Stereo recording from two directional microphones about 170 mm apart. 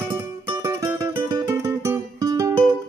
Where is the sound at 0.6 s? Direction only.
20° right (ahead or behind).